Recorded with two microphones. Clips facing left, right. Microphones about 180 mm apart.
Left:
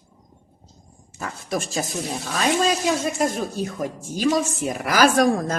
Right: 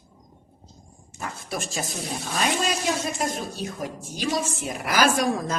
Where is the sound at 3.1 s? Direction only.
50° left (ahead or behind).